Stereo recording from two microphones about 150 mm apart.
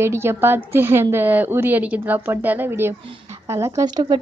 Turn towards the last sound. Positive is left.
turn(degrees=-30)  # may be behind; listen again after turning